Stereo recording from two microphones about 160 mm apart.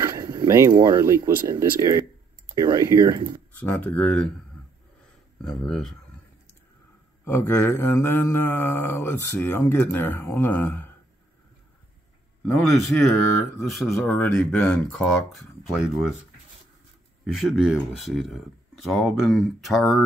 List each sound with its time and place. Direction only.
0.0 s speech: 25° right (ahead or behind)
3.5 s mantra: 10° left (ahead or behind)
5.4 s speech: 5° left (ahead or behind)
7.2 s mantra: 15° left (ahead or behind)
12.4 s mantra: 15° left (ahead or behind)
13.6 s speech: centre (ahead or behind)
17.3 s speech: centre (ahead or behind)